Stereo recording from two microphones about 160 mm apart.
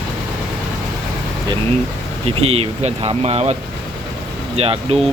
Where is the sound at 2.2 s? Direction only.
40° right (ahead or behind).